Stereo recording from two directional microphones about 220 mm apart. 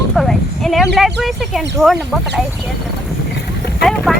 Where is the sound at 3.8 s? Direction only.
Centre (ahead or behind).